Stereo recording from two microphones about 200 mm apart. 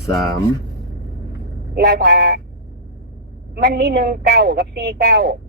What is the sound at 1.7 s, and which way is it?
Speech, 55° right (ahead or behind).